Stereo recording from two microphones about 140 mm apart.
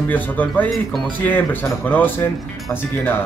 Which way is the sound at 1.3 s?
15° left (ahead or behind).